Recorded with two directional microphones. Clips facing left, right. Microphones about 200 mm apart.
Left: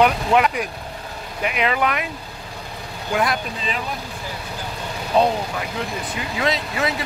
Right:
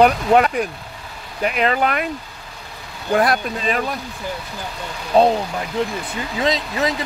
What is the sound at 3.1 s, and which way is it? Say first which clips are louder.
Speech: right 4 dB; 45° right (ahead or behind).